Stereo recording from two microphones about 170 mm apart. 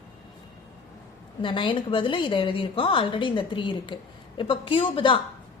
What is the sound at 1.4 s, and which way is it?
A woman's voice, 30° left (ahead or behind).